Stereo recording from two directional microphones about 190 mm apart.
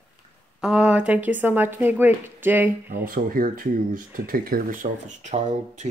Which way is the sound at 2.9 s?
50° right (ahead or behind).